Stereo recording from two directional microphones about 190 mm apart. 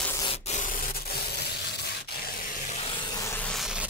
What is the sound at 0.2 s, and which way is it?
Rub, 30° left (ahead or behind).